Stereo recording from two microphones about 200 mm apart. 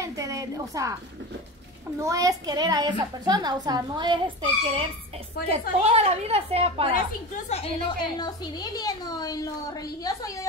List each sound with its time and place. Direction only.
0.0 s a woman's voice: 15° right (ahead or behind)
2.0 s a child's voice: 15° right (ahead or behind)
7.4 s a woman's voice: 30° left (ahead or behind)
8.2 s a woman's voice: 20° left (ahead or behind)